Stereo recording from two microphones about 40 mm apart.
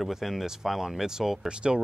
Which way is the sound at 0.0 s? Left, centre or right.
Centre.